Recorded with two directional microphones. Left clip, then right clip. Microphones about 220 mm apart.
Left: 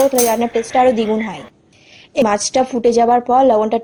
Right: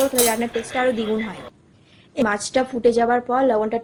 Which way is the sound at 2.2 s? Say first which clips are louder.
Left 4 dB; 30° left (ahead or behind).